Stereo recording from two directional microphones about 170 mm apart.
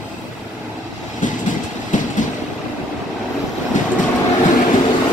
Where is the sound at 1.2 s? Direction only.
50° left (ahead or behind).